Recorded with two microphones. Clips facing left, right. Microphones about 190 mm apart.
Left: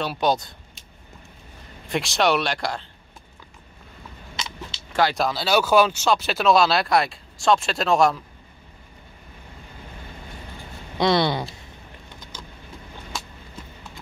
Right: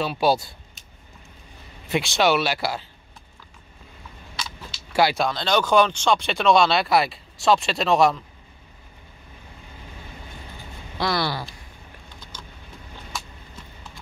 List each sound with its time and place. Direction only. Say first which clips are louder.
0.0 s speech: right 1 dB; 5° right (ahead or behind)
1.9 s speech: right 1 dB; centre (ahead or behind)
4.9 s speech: right 1 dB; 10° right (ahead or behind)
5.2 s speech: left 1 dB; 5° left (ahead or behind)
11.0 s a sound: left 5 dB; 20° left (ahead or behind)